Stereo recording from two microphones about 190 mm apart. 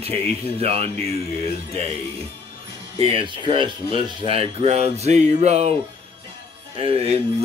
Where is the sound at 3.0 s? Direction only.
30° right (ahead or behind).